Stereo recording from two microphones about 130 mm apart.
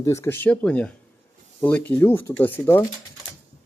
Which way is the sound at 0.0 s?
20° left (ahead or behind).